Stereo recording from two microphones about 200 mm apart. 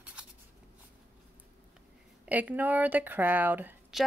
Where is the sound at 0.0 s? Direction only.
5° right (ahead or behind).